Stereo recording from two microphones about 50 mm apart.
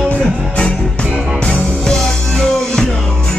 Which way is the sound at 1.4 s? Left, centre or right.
Left.